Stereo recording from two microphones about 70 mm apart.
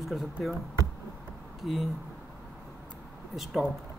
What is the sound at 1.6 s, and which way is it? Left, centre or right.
Speech, centre.